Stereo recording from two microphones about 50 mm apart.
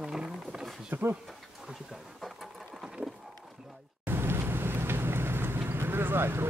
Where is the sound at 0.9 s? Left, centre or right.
Right.